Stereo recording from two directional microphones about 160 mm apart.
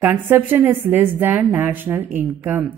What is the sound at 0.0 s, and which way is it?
A woman's voice, 10° right (ahead or behind).